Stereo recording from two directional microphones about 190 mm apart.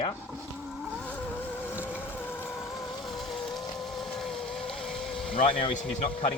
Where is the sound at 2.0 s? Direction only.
10° left (ahead or behind).